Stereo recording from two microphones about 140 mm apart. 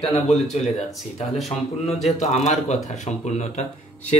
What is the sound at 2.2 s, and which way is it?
Speech, 55° left (ahead or behind).